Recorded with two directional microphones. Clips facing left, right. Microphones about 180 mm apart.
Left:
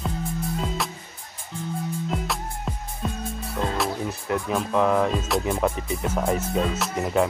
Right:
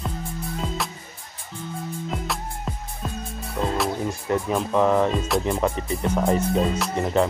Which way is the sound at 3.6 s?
Centre (ahead or behind).